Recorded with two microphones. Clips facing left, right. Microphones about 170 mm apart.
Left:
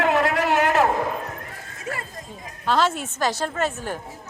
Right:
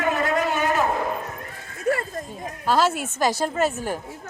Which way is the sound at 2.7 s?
5° right (ahead or behind).